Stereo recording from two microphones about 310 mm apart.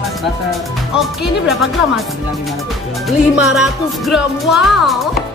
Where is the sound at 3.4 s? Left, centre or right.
Centre.